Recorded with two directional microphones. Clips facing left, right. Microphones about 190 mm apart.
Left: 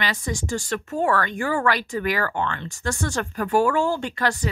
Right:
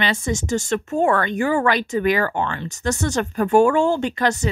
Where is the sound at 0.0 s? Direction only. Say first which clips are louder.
Right 5 dB; 25° right (ahead or behind).